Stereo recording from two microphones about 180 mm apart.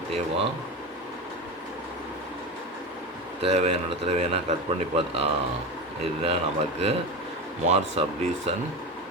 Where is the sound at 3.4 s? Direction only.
35° right (ahead or behind).